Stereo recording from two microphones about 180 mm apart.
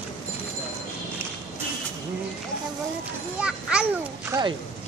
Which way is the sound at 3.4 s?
5° right (ahead or behind).